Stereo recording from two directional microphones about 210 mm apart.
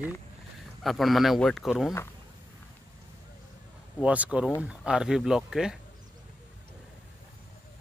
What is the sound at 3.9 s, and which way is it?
Speech, 5° right (ahead or behind).